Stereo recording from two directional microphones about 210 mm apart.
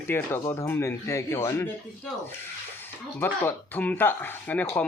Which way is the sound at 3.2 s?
10° left (ahead or behind).